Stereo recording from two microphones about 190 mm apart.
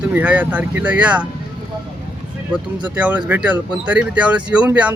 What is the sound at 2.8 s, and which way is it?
Speech, 5° right (ahead or behind).